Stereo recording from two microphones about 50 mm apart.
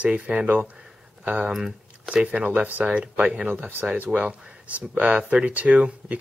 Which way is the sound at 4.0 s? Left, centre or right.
Right.